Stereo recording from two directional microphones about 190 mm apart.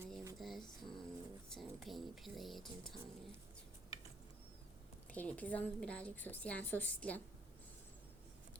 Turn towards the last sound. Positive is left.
turn(degrees=10)  # may be behind; listen again after turning